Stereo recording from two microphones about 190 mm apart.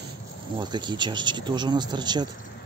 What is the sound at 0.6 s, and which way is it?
Speech, 25° right (ahead or behind).